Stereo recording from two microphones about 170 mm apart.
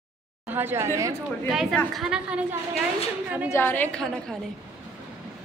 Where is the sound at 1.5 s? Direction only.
5° right (ahead or behind).